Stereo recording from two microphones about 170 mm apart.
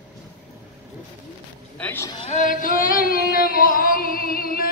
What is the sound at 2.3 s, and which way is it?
Singing, 50° left (ahead or behind).